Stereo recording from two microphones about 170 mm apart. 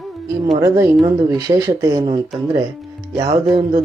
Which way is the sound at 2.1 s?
30° right (ahead or behind).